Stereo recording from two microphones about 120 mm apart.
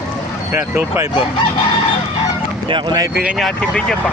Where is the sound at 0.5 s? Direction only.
20° right (ahead or behind).